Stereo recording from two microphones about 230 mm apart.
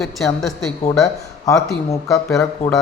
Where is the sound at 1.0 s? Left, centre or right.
Centre.